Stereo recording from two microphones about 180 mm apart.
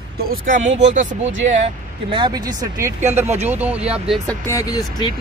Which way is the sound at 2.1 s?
25° right (ahead or behind).